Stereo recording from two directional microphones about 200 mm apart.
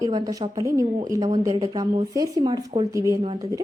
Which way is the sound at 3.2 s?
25° right (ahead or behind).